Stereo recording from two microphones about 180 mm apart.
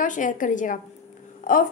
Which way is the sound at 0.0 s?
45° left (ahead or behind).